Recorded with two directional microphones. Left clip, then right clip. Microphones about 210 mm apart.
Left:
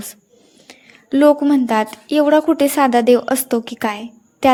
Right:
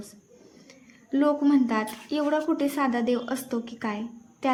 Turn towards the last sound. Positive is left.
turn(degrees=45)  # may be behind; listen again after turning